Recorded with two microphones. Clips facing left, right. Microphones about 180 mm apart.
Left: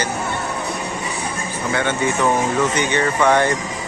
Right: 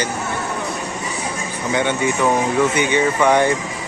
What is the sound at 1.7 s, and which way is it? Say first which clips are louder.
Speech: right 2 dB; 15° right (ahead or behind).